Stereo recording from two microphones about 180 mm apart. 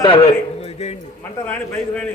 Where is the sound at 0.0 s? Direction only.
30° left (ahead or behind).